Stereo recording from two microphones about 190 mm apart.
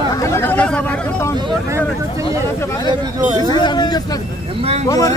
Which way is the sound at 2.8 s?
25° right (ahead or behind).